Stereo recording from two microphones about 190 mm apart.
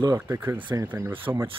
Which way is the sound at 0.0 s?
15° right (ahead or behind).